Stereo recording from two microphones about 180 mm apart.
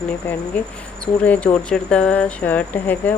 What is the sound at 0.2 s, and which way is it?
Speech, 10° left (ahead or behind).